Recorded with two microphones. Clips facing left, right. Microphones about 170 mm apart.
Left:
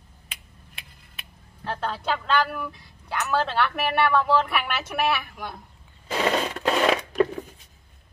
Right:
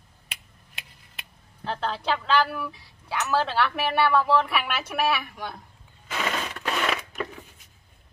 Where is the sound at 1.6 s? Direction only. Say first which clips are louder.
Even; centre (ahead or behind).